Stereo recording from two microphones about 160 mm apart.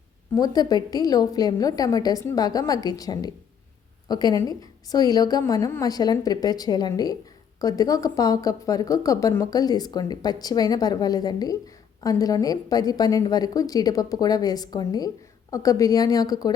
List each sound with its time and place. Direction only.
0.3 s a woman's voice: 25° left (ahead or behind)